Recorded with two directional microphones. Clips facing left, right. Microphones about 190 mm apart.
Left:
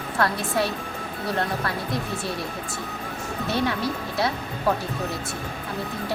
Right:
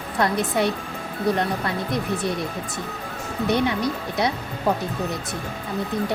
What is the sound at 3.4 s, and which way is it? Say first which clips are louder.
Speech: right 4 dB; 15° right (ahead or behind).